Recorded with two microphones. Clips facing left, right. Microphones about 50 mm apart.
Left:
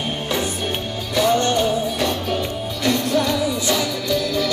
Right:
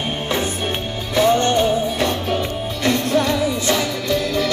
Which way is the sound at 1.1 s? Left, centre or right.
Right.